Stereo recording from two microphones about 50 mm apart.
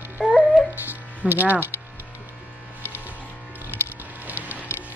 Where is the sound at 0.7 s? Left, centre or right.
Right.